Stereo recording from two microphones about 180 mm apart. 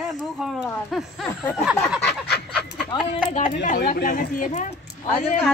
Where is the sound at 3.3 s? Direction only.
45° left (ahead or behind).